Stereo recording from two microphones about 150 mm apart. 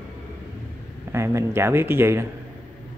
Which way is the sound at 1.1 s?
20° right (ahead or behind).